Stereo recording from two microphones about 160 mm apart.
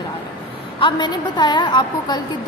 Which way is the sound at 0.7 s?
30° left (ahead or behind).